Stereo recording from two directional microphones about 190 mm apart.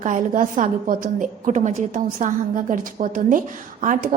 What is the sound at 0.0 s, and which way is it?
A woman's voice, 45° right (ahead or behind).